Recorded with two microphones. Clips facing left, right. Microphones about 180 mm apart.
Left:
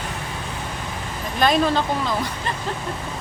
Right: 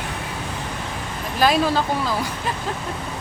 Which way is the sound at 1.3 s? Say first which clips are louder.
Even; 5° right (ahead or behind).